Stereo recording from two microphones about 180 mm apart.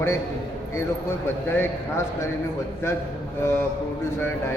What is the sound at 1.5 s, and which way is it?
Speech, 10° left (ahead or behind).